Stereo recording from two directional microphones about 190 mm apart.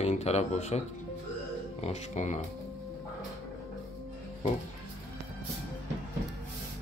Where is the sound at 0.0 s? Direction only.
35° left (ahead or behind).